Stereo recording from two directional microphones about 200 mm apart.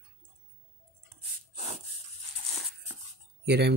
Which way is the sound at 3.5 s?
55° right (ahead or behind).